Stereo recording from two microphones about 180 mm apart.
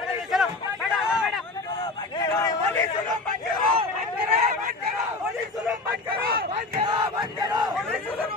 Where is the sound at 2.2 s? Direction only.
20° left (ahead or behind).